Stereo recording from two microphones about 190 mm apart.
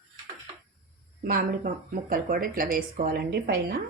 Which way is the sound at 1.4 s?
45° right (ahead or behind).